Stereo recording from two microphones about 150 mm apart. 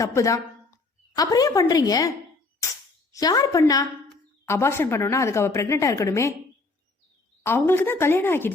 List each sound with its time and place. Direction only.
0.0 s a woman's voice: 20° left (ahead or behind)
7.4 s speech: 15° left (ahead or behind)